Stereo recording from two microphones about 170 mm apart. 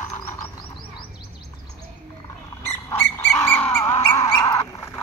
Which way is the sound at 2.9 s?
15° left (ahead or behind).